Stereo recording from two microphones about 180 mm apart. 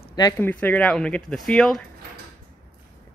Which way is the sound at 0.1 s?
20° left (ahead or behind).